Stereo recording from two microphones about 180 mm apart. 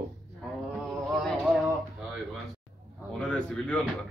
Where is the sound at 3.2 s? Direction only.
5° left (ahead or behind).